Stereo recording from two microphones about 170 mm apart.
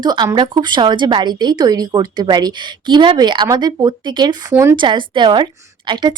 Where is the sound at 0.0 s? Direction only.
25° right (ahead or behind).